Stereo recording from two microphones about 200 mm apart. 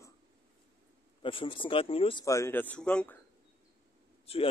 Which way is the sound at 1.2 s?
25° left (ahead or behind).